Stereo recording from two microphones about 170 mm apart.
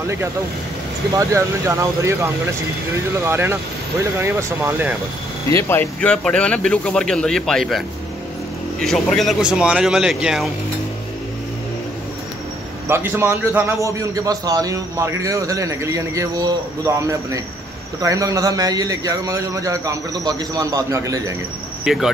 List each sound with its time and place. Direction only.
1.1 s speech: 15° right (ahead or behind)
3.3 s speech: 15° right (ahead or behind)
5.5 s speech: 15° left (ahead or behind); by 10.5 s centre (ahead or behind)
12.8 s a man's voice: 10° right (ahead or behind)
21.8 s speech: 5° right (ahead or behind)